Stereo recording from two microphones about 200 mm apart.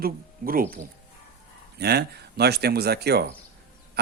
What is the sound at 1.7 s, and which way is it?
Speech, 55° right (ahead or behind).